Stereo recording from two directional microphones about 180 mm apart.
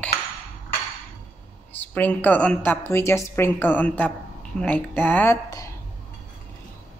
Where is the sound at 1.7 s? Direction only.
10° left (ahead or behind).